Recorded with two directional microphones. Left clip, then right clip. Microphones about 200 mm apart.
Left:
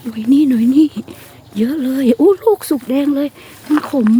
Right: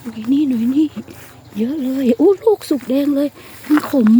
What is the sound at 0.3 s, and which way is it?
Speech, 20° left (ahead or behind).